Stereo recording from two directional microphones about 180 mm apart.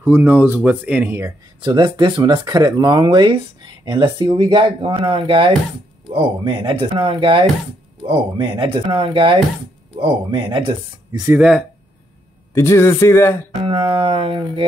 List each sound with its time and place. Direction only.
0.0 s speech: 10° right (ahead or behind)
1.6 s speech: 25° right (ahead or behind)
11.3 s speech: 5° right (ahead or behind)
12.5 s speech: 15° left (ahead or behind)
13.7 s speech: 30° right (ahead or behind)